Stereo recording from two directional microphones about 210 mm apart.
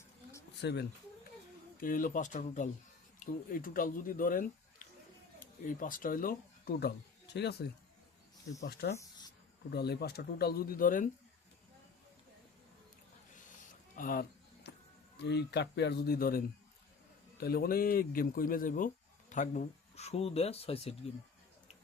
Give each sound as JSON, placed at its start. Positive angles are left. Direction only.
{"t": 0.5, "sound": "speech", "side_deg": 55}
{"t": 1.8, "sound": "speech", "side_deg": 40}
{"t": 5.6, "sound": "speech", "side_deg": 40}
{"t": 13.9, "sound": "a sound", "side_deg": 40}
{"t": 15.2, "sound": "speech", "side_deg": 55}
{"t": 17.4, "sound": "speech", "side_deg": 45}